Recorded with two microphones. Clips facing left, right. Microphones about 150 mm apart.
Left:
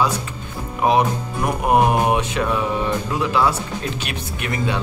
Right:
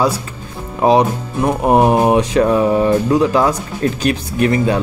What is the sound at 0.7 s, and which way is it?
Music, 30° right (ahead or behind).